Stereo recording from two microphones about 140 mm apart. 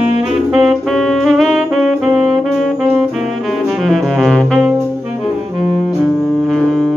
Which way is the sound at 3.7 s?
Centre (ahead or behind).